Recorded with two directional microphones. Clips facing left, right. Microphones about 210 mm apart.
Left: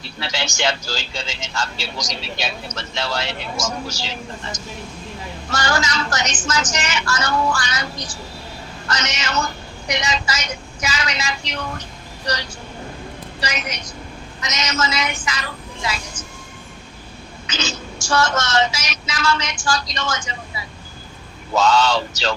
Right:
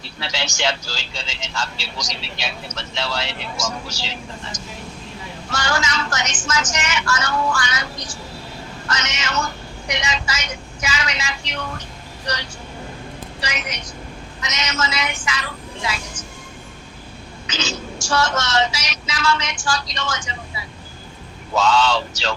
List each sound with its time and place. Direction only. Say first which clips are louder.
0.2 s speech: left 1 dB; 50° left (ahead or behind)
13.4 s speech: left 2 dB; 40° left (ahead or behind)
17.5 s speech: even; 50° left (ahead or behind)
21.5 s speech: left 1 dB; 40° left (ahead or behind)